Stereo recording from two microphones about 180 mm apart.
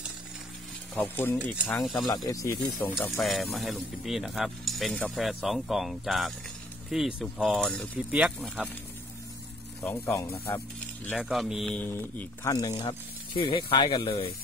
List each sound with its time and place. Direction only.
0.9 s speech: 10° left (ahead or behind)
2.0 s speech: 20° left (ahead or behind)
3.0 s speech: centre (ahead or behind)
9.8 s speech: 15° left (ahead or behind)
11.1 s speech: 5° right (ahead or behind); by 14.3 s 30° left (ahead or behind)